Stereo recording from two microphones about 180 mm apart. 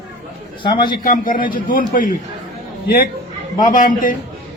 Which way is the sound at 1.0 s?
50° left (ahead or behind).